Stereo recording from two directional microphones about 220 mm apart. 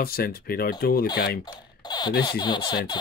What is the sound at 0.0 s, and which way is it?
Speech, 45° left (ahead or behind).